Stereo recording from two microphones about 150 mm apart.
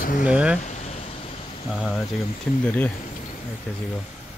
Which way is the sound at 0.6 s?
50° left (ahead or behind).